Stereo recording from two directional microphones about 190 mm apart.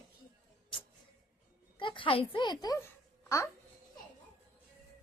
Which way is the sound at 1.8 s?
25° left (ahead or behind).